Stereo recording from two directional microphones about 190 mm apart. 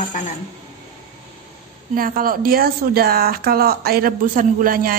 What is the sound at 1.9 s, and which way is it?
Speech, 50° right (ahead or behind).